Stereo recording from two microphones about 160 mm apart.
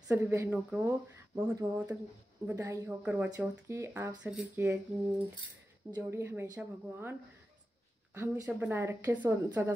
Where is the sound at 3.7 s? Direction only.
15° right (ahead or behind).